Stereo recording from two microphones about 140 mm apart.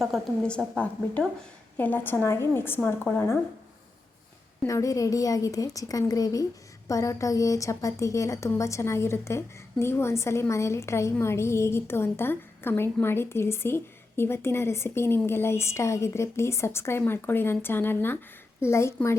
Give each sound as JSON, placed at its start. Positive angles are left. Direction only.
{"t": 0.0, "sound": "a woman's voice", "side_deg": 5}
{"t": 4.6, "sound": "a woman's voice", "side_deg": 20}